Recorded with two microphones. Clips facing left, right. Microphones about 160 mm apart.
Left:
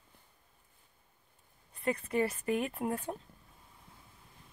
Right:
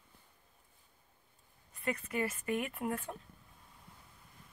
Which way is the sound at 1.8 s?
30° left (ahead or behind).